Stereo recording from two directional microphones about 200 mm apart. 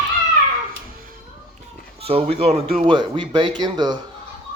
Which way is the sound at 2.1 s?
30° right (ahead or behind).